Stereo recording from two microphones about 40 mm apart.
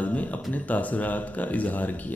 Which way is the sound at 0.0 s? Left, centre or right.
Left.